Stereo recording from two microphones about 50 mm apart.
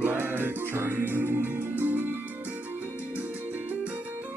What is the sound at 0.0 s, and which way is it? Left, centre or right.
Music, right.